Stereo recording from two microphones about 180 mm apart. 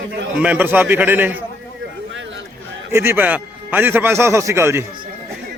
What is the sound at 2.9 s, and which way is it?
A man's voice, 10° right (ahead or behind).